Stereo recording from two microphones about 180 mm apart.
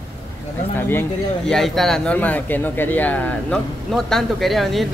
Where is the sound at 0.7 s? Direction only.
10° left (ahead or behind).